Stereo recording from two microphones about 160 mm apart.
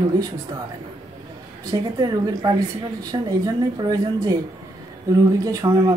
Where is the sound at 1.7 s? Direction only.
25° right (ahead or behind).